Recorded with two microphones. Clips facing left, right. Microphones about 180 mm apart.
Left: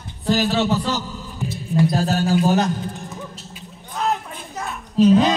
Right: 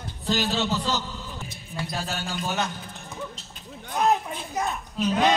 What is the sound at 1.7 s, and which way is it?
Music, 40° left (ahead or behind).